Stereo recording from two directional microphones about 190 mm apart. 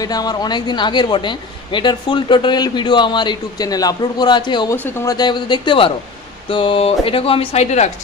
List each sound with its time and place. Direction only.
0.0 s speech: 20° left (ahead or behind)
4.7 s speech: 10° left (ahead or behind); by 7.9 s 35° left (ahead or behind)